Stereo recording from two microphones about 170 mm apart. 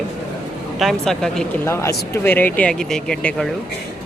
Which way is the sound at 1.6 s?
15° left (ahead or behind).